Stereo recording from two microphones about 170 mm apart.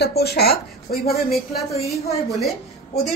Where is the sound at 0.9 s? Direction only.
60° left (ahead or behind).